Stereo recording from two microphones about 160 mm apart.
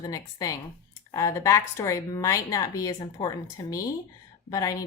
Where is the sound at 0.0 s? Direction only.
25° left (ahead or behind).